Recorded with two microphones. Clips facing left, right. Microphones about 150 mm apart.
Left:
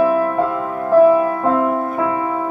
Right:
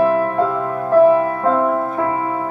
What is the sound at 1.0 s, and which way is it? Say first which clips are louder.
Music: even; 20° right (ahead or behind).